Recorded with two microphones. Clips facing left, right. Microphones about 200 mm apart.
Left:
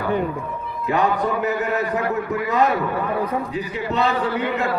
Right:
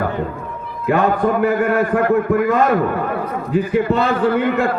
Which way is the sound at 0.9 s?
50° right (ahead or behind).